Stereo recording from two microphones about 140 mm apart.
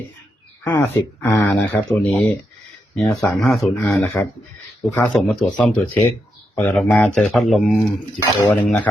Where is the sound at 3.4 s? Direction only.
Centre (ahead or behind).